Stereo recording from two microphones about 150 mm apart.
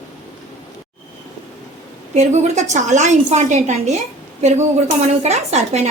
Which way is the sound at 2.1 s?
50° right (ahead or behind).